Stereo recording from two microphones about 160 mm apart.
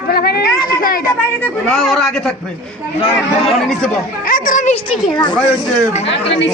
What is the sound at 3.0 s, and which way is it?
Speech, 35° left (ahead or behind).